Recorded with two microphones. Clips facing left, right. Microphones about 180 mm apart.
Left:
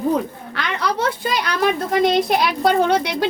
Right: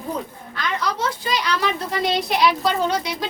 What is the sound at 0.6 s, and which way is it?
A woman's voice, 60° left (ahead or behind).